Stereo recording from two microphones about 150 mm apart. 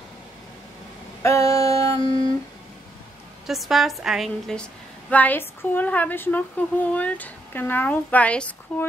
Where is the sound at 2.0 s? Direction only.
30° left (ahead or behind).